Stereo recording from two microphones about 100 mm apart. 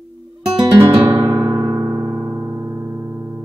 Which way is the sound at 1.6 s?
40° right (ahead or behind).